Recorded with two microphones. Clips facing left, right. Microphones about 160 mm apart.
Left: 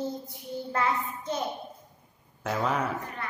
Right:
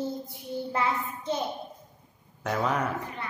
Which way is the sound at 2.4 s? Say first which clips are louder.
Right 1 dB; centre (ahead or behind).